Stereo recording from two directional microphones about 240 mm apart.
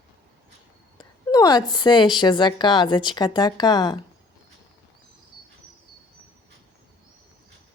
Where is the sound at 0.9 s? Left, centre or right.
Centre.